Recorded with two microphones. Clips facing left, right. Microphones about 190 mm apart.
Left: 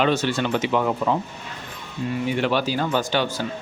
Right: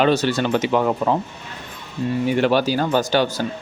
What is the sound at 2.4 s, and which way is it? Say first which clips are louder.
Speech: right 4 dB; 40° right (ahead or behind).